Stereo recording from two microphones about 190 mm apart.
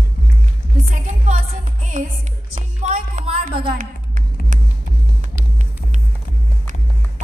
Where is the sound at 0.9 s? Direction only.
40° right (ahead or behind).